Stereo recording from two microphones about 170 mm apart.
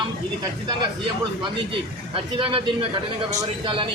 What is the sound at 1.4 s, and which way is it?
Speech, 30° right (ahead or behind).